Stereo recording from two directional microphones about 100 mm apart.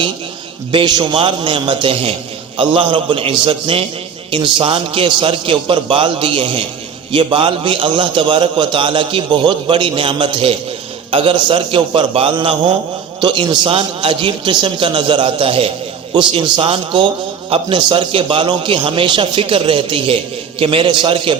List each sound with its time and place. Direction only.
0.7 s a man's voice: 50° right (ahead or behind); by 6.7 s 70° right (ahead or behind)
7.1 s a man's voice: 60° right (ahead or behind)
13.2 s a man's voice: 50° right (ahead or behind)